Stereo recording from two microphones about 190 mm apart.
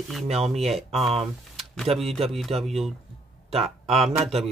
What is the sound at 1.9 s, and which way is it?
Speech, centre (ahead or behind).